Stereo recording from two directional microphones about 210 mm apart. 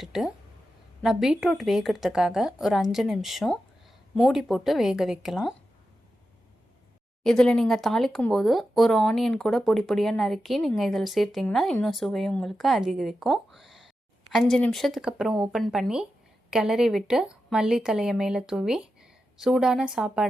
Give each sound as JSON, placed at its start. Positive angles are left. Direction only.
{"t": 0.0, "sound": "speech", "side_deg": 0}
{"t": 7.3, "sound": "speech", "side_deg": 5}